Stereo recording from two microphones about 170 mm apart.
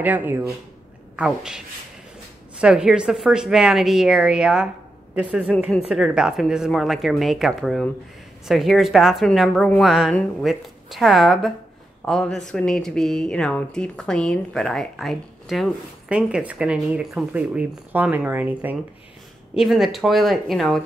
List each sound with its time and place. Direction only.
0.0 s speech: 10° right (ahead or behind)
2.6 s speech: 5° right (ahead or behind)